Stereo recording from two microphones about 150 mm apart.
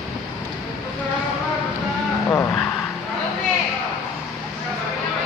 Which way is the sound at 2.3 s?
15° left (ahead or behind).